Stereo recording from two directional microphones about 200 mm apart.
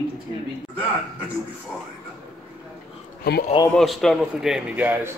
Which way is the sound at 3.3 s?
50° left (ahead or behind).